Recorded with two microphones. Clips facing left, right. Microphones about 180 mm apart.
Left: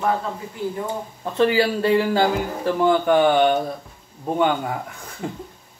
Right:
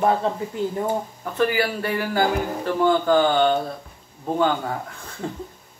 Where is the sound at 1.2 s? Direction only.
25° left (ahead or behind).